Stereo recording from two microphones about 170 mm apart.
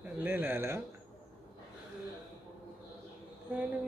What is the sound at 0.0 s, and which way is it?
Speech, 10° right (ahead or behind).